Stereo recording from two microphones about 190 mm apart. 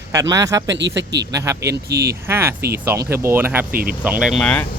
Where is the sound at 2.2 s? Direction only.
15° right (ahead or behind).